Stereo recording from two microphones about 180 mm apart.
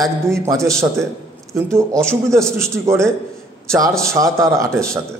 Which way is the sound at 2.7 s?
15° right (ahead or behind).